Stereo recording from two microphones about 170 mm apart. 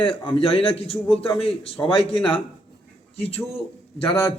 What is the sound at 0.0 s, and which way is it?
A man's voice, 30° left (ahead or behind).